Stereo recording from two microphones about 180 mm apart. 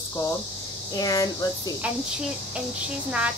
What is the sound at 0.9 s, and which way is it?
Speech, 20° left (ahead or behind).